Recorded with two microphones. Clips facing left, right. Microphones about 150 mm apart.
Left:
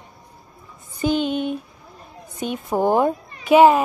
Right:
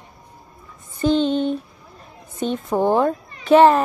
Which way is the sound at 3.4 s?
Centre (ahead or behind).